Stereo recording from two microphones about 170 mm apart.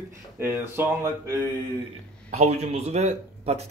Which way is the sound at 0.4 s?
15° right (ahead or behind).